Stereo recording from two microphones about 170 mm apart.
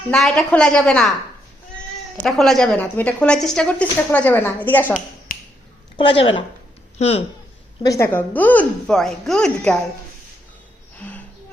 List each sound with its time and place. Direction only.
0.1 s a woman's voice: centre (ahead or behind)
2.2 s a woman's voice: centre (ahead or behind)
5.3 s finger snapping: 55° left (ahead or behind)
6.0 s speech: 30° left (ahead or behind)
7.8 s a woman's voice: 20° left (ahead or behind); by 9.7 s 5° left (ahead or behind)
11.0 s music: 10° left (ahead or behind)